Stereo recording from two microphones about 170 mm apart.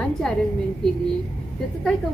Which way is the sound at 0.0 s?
5° left (ahead or behind).